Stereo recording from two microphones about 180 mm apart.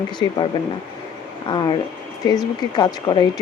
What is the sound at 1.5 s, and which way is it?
Speech, 25° left (ahead or behind).